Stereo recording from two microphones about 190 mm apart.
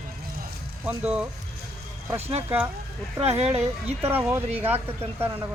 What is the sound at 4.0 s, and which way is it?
Speech, 10° right (ahead or behind).